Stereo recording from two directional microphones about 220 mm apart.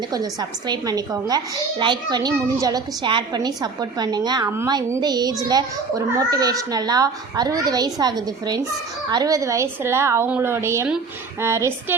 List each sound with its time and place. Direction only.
0.7 s a child's voice: 15° right (ahead or behind)